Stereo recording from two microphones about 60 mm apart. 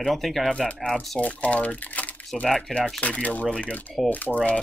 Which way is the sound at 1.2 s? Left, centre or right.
Left.